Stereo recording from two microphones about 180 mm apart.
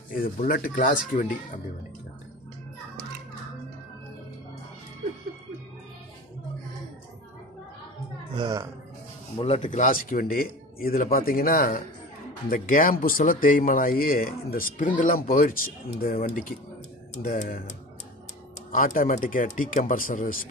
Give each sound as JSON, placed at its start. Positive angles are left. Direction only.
{"t": 0.1, "sound": "speech", "side_deg": 55}
{"t": 8.4, "sound": "speech", "side_deg": -20}
{"t": 9.4, "sound": "speech", "side_deg": 40}
{"t": 18.7, "sound": "speech", "side_deg": 50}